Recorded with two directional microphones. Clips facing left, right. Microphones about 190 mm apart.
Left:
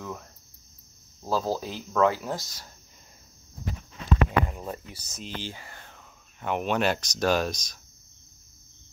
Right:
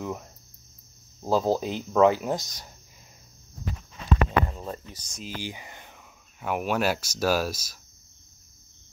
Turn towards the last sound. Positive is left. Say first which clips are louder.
# even
turn(degrees=-5)  # may be behind; listen again after turning